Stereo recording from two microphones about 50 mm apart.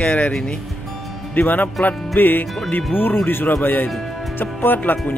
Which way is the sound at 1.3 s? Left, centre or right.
Left.